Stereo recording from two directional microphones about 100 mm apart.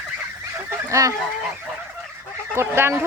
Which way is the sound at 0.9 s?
30° right (ahead or behind).